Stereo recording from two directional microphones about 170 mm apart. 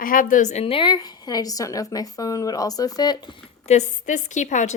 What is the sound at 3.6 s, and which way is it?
A woman's voice, 45° left (ahead or behind).